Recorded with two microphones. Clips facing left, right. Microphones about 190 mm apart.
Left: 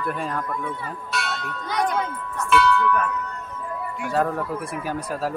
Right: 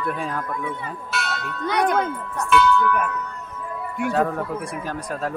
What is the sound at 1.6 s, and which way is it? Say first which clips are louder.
Tubular bells: right 4 dB; 65° right (ahead or behind).